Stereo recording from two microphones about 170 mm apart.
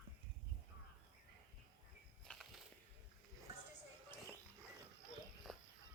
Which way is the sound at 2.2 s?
5° left (ahead or behind).